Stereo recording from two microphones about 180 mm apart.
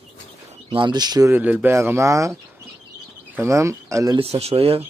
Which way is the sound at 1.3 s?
10° right (ahead or behind).